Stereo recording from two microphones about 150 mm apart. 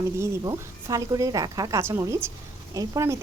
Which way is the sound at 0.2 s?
20° right (ahead or behind).